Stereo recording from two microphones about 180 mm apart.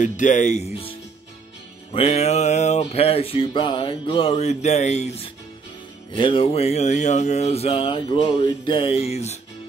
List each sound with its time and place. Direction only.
0.0 s speech: 45° left (ahead or behind)
1.9 s music: 35° left (ahead or behind)